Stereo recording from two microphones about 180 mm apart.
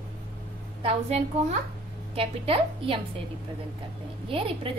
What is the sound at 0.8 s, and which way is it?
A woman's voice, 35° right (ahead or behind).